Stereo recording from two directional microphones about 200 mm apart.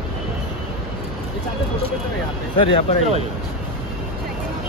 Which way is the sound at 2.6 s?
30° left (ahead or behind).